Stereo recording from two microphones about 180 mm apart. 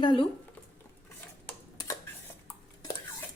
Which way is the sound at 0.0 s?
30° left (ahead or behind).